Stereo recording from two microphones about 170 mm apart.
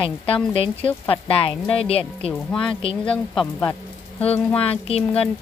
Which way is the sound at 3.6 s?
15° left (ahead or behind).